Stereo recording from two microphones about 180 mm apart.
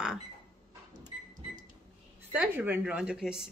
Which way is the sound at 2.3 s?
10° right (ahead or behind).